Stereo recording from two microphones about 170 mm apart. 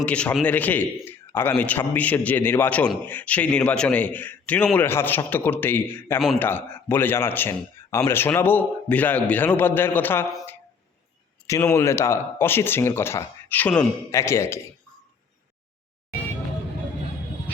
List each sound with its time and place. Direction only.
0.0 s speech: 5° left (ahead or behind)
11.6 s speech: 15° left (ahead or behind)